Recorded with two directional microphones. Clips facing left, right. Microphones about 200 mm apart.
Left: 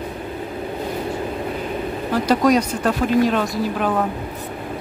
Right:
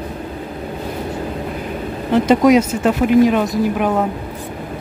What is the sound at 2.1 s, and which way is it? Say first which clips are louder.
Speech: right 5 dB; 20° right (ahead or behind).